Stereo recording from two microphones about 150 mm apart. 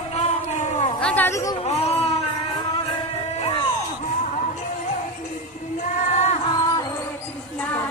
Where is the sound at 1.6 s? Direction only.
45° left (ahead or behind).